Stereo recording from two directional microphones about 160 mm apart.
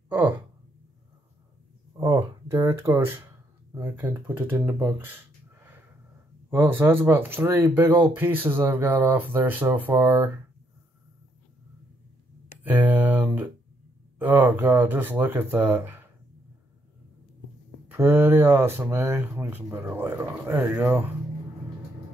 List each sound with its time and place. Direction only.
2.0 s a sound: 15° right (ahead or behind)
3.7 s speech: 15° right (ahead or behind)
12.6 s speech: 10° right (ahead or behind)
17.9 s speech: 15° right (ahead or behind)